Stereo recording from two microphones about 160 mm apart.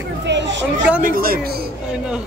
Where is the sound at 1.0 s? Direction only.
65° right (ahead or behind).